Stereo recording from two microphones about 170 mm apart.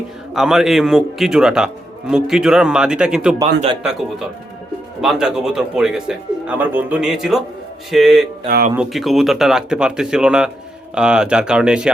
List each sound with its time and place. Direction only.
0.3 s a man's voice: 5° right (ahead or behind)
4.9 s a man's voice: 5° right (ahead or behind)
8.4 s speech: 60° right (ahead or behind)
8.7 s a man's voice: 5° right (ahead or behind)